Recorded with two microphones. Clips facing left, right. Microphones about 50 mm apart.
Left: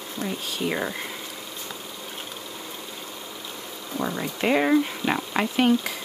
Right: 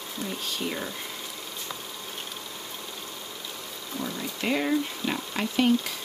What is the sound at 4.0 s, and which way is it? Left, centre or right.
Speech, left.